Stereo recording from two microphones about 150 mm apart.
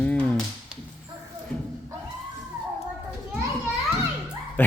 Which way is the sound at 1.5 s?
10° left (ahead or behind).